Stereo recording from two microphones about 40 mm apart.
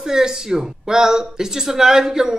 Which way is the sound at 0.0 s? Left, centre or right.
Centre.